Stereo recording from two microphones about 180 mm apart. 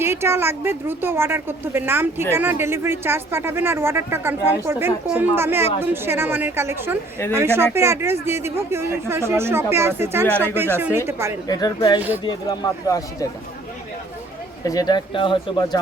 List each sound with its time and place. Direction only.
0.0 s speech: 15° right (ahead or behind)
11.4 s speech: 25° left (ahead or behind)
14.7 s speech: 20° left (ahead or behind)